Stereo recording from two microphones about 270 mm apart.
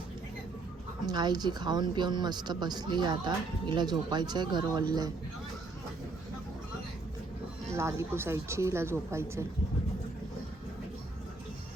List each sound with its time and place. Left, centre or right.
1.0 s a woman's voice: centre
7.7 s a woman's voice: centre